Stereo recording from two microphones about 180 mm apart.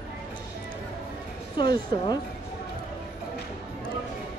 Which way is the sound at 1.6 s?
25° left (ahead or behind).